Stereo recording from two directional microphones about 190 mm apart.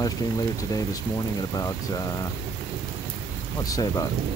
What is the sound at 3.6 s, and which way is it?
Speech, 20° left (ahead or behind).